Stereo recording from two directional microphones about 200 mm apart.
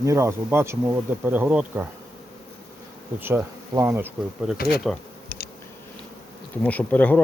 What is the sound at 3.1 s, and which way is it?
Bee, 10° right (ahead or behind).